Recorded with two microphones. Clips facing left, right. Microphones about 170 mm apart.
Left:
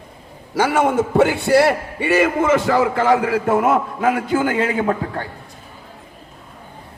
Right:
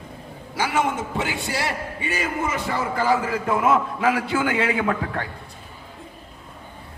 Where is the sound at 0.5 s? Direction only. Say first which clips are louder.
Left 7 dB; 55° left (ahead or behind); by 5.3 s 35° left (ahead or behind).